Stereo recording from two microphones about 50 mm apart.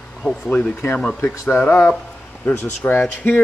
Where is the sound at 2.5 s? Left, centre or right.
Left.